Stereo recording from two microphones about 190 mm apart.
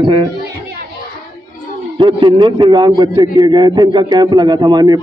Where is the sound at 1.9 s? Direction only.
25° right (ahead or behind).